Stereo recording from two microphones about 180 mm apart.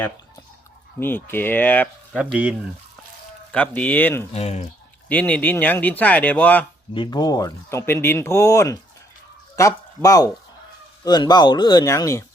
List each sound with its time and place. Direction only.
0.9 s speech: 10° left (ahead or behind)
2.1 s speech: 5° right (ahead or behind)
3.8 s speech: 10° left (ahead or behind)
4.3 s speech: 35° left (ahead or behind)
5.0 s speech: 10° left (ahead or behind)
6.9 s speech: 25° left (ahead or behind)